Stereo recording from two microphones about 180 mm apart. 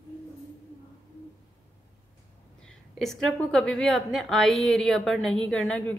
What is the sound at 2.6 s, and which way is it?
A woman's voice, centre (ahead or behind).